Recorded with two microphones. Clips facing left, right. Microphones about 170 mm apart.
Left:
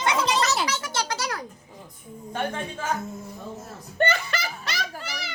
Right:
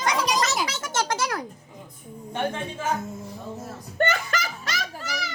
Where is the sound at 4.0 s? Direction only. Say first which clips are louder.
Even; 45° right (ahead or behind).